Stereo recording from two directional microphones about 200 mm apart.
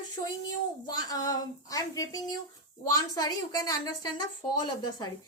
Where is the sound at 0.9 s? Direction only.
20° left (ahead or behind).